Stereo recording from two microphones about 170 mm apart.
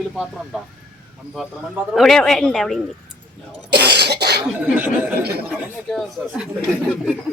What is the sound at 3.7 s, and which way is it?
Cough, 75° right (ahead or behind).